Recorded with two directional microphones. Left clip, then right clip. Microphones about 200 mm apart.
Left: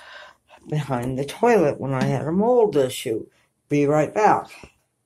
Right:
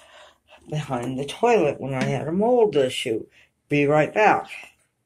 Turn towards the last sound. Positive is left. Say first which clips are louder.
# even
turn(degrees=10)  # may be behind; listen again after turning